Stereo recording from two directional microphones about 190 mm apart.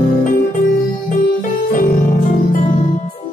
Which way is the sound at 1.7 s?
45° left (ahead or behind).